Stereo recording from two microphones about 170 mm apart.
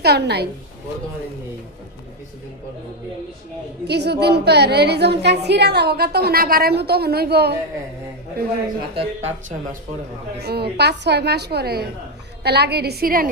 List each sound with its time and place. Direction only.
0.0 s a woman's voice: 75° right (ahead or behind)
3.8 s a woman's voice: 80° right
9.0 s speech: 40° right (ahead or behind)
10.4 s a woman's voice: 70° right (ahead or behind)